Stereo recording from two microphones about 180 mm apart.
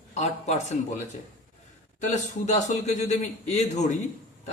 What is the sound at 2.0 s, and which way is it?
A man's voice, 40° left (ahead or behind).